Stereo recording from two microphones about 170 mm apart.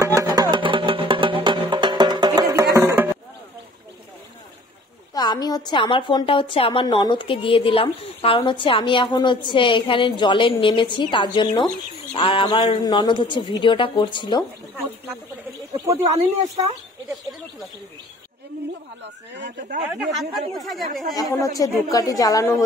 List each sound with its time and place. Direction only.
0.0 s music: 20° right (ahead or behind)
2.7 s a sound: 15° right (ahead or behind)
5.1 s a woman's voice: 25° left (ahead or behind)
15.7 s speech: 20° right (ahead or behind)
19.9 s a woman's voice: centre (ahead or behind)
21.1 s a woman's voice: 20° left (ahead or behind)